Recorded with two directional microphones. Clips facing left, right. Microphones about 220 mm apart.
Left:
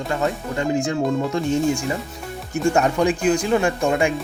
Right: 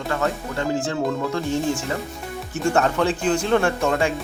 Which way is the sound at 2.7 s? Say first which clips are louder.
Even; 15° left (ahead or behind).